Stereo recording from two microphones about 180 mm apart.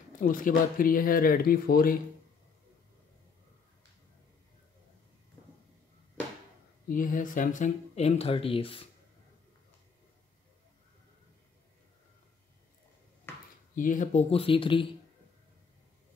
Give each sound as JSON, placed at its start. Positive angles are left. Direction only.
{"t": 0.2, "sound": "speech", "side_deg": 50}
{"t": 6.9, "sound": "speech", "side_deg": 50}
{"t": 13.3, "sound": "a sound", "side_deg": 15}
{"t": 13.7, "sound": "speech", "side_deg": 45}
{"t": 14.3, "sound": "speech", "side_deg": 30}